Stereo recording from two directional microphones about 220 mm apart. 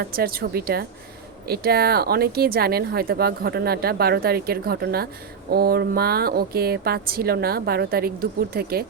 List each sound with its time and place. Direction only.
0.0 s speech: 45° right (ahead or behind)